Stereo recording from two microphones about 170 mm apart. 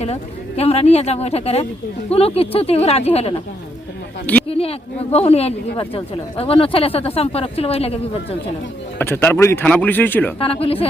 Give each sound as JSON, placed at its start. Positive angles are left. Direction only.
{"t": 0.0, "sound": "speech", "side_deg": 35}
{"t": 4.4, "sound": "a sound", "side_deg": 35}
{"t": 5.1, "sound": "speech", "side_deg": 35}
{"t": 9.0, "sound": "speech", "side_deg": 15}
{"t": 10.4, "sound": "speech", "side_deg": 35}